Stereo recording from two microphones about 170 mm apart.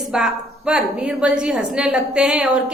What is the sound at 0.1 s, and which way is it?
A woman's voice, 5° right (ahead or behind).